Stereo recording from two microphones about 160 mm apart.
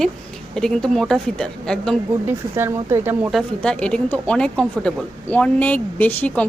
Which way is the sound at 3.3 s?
5° left (ahead or behind).